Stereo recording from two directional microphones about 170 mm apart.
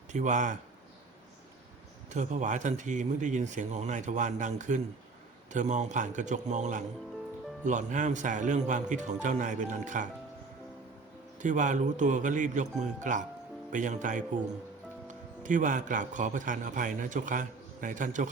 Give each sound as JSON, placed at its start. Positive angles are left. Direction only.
{"t": 0.1, "sound": "speech", "side_deg": -45}
{"t": 2.0, "sound": "speech", "side_deg": -45}
{"t": 11.3, "sound": "speech", "side_deg": -45}